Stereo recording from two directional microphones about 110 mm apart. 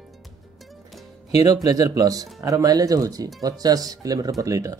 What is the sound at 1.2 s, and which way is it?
Speech, 35° right (ahead or behind).